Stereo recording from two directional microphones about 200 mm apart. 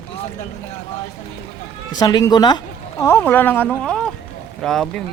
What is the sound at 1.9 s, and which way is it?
Speech, 20° left (ahead or behind).